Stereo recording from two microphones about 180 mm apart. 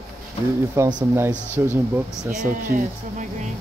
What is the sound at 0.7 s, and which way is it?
Speech, 15° right (ahead or behind).